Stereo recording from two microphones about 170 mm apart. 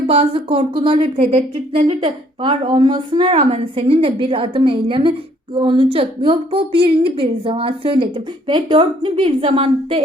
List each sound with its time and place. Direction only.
0.1 s speech: 30° right (ahead or behind)